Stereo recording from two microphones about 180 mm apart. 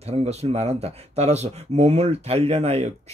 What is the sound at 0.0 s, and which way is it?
Speech, 35° right (ahead or behind).